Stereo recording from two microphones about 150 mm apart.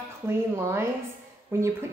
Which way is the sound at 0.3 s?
15° right (ahead or behind).